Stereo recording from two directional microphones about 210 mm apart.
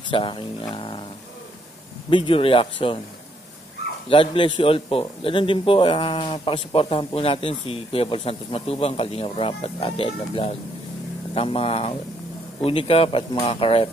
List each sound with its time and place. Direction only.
0.1 s a man's voice: 25° left (ahead or behind)
2.0 s a man's voice: 25° left (ahead or behind)
4.1 s a man's voice: 25° left (ahead or behind)